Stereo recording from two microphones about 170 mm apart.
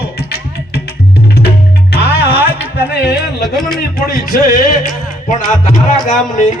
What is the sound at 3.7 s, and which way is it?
Speech, 55° left (ahead or behind).